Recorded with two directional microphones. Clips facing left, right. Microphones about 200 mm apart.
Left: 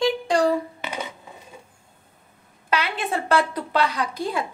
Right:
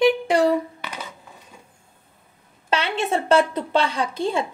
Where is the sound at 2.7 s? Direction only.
25° right (ahead or behind).